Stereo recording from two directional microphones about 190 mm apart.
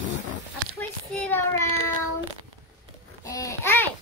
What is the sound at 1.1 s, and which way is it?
Child singing, 10° left (ahead or behind).